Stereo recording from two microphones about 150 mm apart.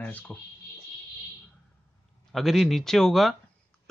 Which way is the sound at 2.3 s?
Centre (ahead or behind).